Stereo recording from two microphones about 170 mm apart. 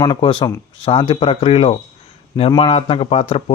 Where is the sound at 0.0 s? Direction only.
30° left (ahead or behind).